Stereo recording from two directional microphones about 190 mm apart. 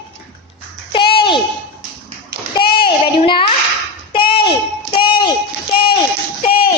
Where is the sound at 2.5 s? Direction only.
25° left (ahead or behind).